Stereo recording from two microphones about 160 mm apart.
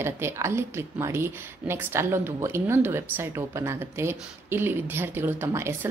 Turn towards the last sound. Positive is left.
turn(degrees=-15)  # may be behind; listen again after turning